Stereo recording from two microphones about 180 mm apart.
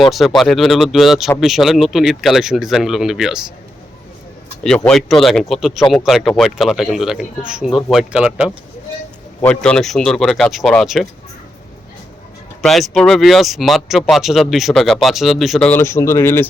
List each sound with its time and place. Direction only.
0.1 s speech: centre (ahead or behind)
4.9 s speech: centre (ahead or behind)
9.4 s speech: 5° left (ahead or behind)
12.6 s speech: centre (ahead or behind)